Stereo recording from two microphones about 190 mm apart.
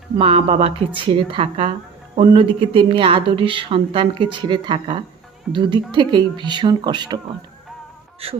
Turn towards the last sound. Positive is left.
turn(degrees=-25)  # may be behind; listen again after turning